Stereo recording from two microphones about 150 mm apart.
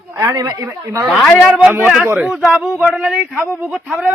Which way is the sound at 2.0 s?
10° right (ahead or behind).